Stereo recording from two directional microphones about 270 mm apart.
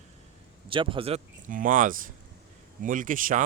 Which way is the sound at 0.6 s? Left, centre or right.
Centre.